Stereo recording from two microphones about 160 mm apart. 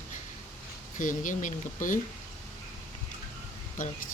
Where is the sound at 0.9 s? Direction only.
55° left (ahead or behind).